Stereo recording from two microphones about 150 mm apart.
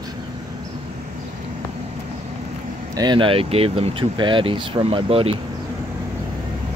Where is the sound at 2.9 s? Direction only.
30° right (ahead or behind).